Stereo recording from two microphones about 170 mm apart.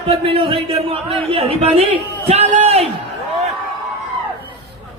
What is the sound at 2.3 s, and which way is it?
Speech, 40° right (ahead or behind).